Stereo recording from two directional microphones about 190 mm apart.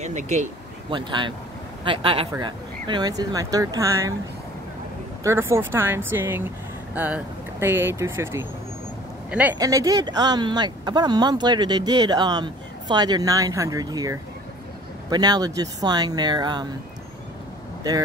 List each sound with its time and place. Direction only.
0.0 s speech: 40° right (ahead or behind)
0.8 s speech: 25° right (ahead or behind)
5.2 s speech: 15° right (ahead or behind)
7.6 s speech: 10° right (ahead or behind)